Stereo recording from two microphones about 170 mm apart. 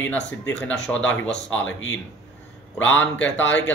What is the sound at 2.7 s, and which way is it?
Speech, 10° left (ahead or behind).